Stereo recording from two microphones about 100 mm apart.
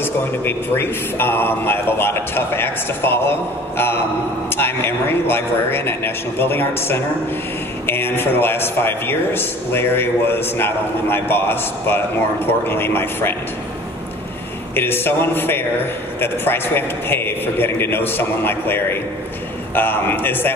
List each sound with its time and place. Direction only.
0.0 s speech: 20° left (ahead or behind)
14.8 s speech: 20° left (ahead or behind)